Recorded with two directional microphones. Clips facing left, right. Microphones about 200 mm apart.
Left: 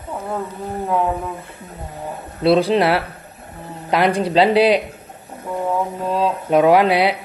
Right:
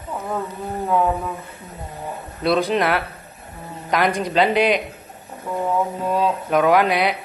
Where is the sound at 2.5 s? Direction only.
30° left (ahead or behind).